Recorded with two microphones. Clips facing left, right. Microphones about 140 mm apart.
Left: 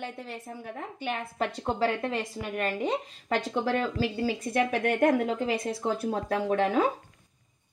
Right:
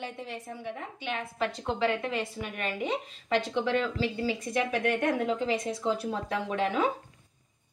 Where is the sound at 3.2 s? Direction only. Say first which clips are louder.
Even; 45° left (ahead or behind).